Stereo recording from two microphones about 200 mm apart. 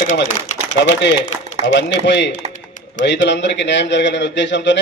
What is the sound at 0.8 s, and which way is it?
A man's voice, 60° left (ahead or behind).